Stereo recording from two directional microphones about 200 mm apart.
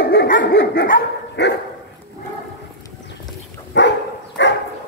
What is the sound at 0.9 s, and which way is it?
Dog, 60° left (ahead or behind).